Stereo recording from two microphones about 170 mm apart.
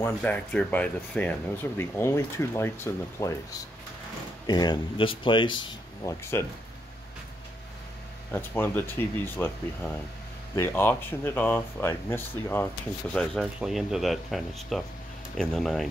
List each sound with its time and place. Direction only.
0.0 s speech: 10° left (ahead or behind)
4.5 s speech: 25° left (ahead or behind)
6.3 s speech: 15° left (ahead or behind)
8.3 s speech: 10° left (ahead or behind)
13.1 s speech: 5° left (ahead or behind)